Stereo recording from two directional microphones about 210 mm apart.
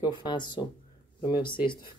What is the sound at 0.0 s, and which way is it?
Speech, 20° left (ahead or behind).